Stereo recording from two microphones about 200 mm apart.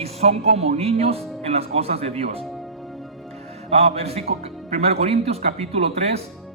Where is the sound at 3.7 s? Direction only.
30° right (ahead or behind).